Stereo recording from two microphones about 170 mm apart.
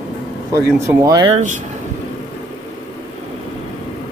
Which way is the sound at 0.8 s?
15° right (ahead or behind).